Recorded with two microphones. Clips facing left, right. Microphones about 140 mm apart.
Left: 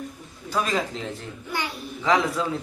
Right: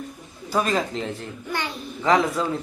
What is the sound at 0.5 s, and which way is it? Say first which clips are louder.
Speech: right 3 dB; centre (ahead or behind).